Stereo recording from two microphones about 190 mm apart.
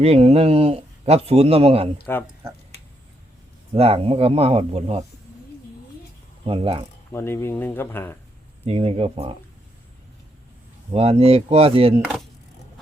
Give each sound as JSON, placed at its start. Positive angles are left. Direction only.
{"t": 0.0, "sound": "speech", "side_deg": -35}
{"t": 3.8, "sound": "speech", "side_deg": -30}
{"t": 6.4, "sound": "speech", "side_deg": -30}
{"t": 7.1, "sound": "speech", "side_deg": 15}
{"t": 8.6, "sound": "speech", "side_deg": -30}
{"t": 10.9, "sound": "speech", "side_deg": -30}